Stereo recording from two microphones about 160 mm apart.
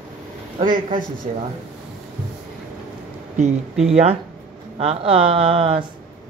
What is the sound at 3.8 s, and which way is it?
Speech, 40° right (ahead or behind).